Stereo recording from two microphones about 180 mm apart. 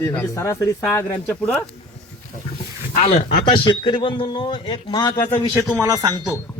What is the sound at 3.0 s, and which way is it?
Speech, 35° left (ahead or behind).